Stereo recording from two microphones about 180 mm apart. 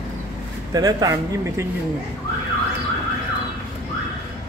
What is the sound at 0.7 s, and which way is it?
Speech, 20° right (ahead or behind).